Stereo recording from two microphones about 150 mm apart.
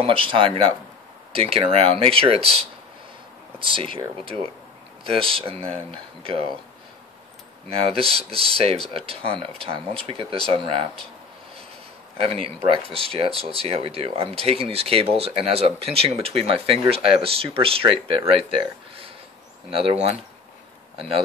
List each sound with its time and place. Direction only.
0.0 s speech: 35° right (ahead or behind)
5.0 s speech: 40° right (ahead or behind)
7.7 s speech: 40° right (ahead or behind)
12.2 s speech: 40° right (ahead or behind)